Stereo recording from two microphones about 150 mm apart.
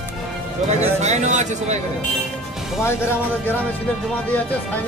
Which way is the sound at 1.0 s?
50° right (ahead or behind).